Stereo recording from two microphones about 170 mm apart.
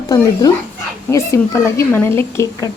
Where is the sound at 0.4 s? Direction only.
20° left (ahead or behind).